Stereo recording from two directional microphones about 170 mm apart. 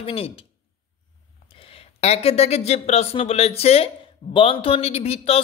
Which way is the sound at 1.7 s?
35° left (ahead or behind).